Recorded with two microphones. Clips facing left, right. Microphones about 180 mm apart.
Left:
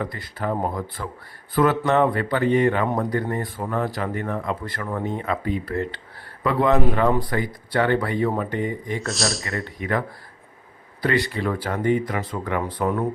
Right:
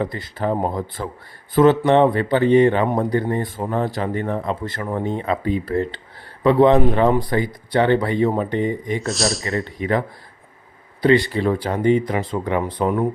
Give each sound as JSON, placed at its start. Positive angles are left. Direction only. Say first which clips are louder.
{"t": 0.0, "sound": "speech", "louder": "right 5 dB", "side_deg": -25}
{"t": 9.0, "sound": "speech", "louder": "right 4 dB", "side_deg": 0}
{"t": 11.3, "sound": "speech", "louder": "right 5 dB", "side_deg": -25}